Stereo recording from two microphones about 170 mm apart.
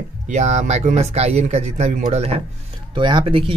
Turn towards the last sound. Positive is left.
turn(degrees=-30)  # may be behind; listen again after turning